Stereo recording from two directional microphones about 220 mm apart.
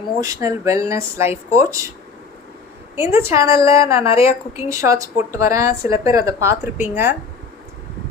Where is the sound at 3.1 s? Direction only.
10° right (ahead or behind).